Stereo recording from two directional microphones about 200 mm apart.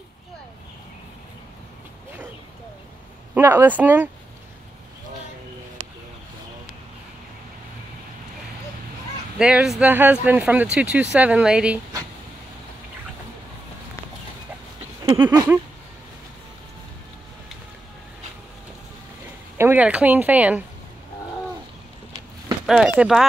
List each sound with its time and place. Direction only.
3.3 s speech: 10° right (ahead or behind)
9.4 s speech: 5° right (ahead or behind)
15.2 s a sound: 20° right (ahead or behind)
19.5 s speech: 10° right (ahead or behind)
22.7 s speech: 5° right (ahead or behind)